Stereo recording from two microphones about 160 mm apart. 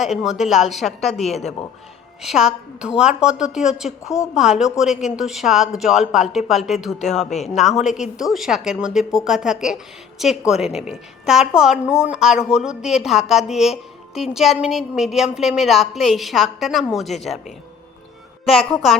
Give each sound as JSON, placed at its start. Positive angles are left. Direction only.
{"t": 0.0, "sound": "a woman's voice", "side_deg": -5}
{"t": 7.3, "sound": "speech", "side_deg": 45}
{"t": 7.9, "sound": "a woman's voice", "side_deg": -5}